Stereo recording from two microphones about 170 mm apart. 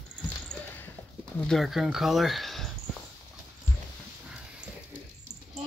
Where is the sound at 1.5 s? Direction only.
Centre (ahead or behind).